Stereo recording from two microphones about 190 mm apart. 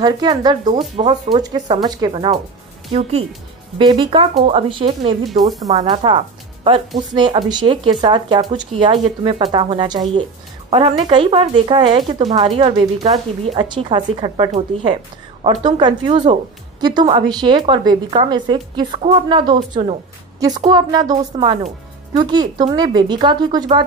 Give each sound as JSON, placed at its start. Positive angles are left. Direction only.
{"t": 0.0, "sound": "speech", "side_deg": -20}
{"t": 5.2, "sound": "speech", "side_deg": 0}
{"t": 5.7, "sound": "a woman's voice", "side_deg": -25}